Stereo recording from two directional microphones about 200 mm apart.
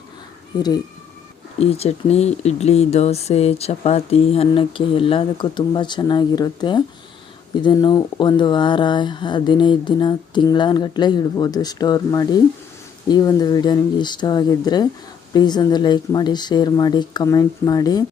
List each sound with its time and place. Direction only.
1.5 s speech: 30° left (ahead or behind)